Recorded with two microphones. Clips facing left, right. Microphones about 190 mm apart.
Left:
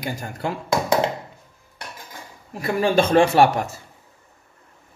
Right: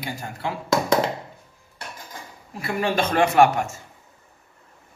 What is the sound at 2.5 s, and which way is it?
A man's voice, 30° left (ahead or behind).